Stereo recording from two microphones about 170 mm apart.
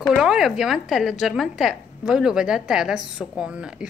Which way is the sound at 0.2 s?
5° right (ahead or behind).